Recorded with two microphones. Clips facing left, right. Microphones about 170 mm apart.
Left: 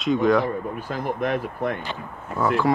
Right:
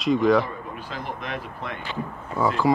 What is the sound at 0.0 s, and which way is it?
Speech, centre (ahead or behind).